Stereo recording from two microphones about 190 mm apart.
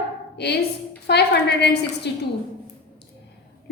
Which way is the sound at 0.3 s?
60° left (ahead or behind).